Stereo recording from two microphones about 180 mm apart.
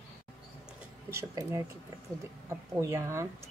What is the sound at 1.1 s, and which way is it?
Speech, 15° right (ahead or behind).